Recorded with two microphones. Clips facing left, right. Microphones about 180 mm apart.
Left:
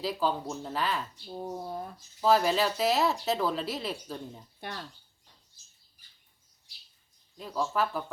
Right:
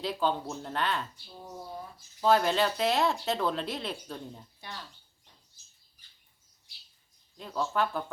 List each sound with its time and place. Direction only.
0.0 s speech: centre (ahead or behind)
1.3 s speech: 50° left (ahead or behind)
2.2 s speech: centre (ahead or behind)
7.3 s speech: 5° left (ahead or behind)